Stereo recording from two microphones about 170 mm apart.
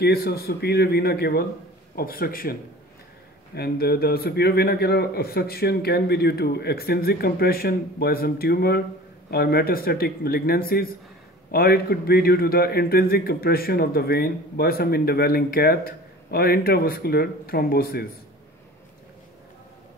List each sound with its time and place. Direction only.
0.0 s a man's voice: 70° left (ahead or behind)
3.5 s a man's voice: 65° left (ahead or behind)